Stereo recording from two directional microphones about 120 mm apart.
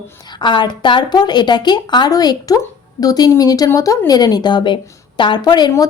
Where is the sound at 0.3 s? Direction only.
40° left (ahead or behind).